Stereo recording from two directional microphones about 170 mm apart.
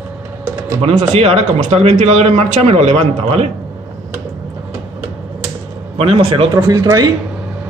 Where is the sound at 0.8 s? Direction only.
35° right (ahead or behind).